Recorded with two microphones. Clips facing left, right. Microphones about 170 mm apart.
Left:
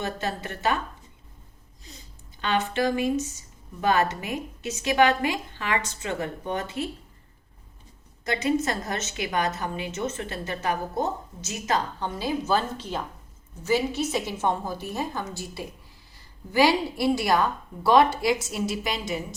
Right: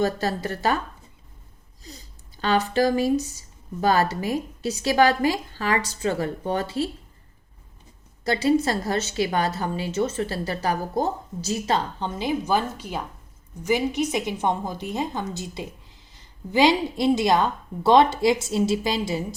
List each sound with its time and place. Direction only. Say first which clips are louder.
0.0 s a woman's voice: right 6 dB; 35° right (ahead or behind)
2.4 s a woman's voice: right 4 dB; 35° right (ahead or behind)
8.2 s a woman's voice: right 4 dB; 35° right (ahead or behind)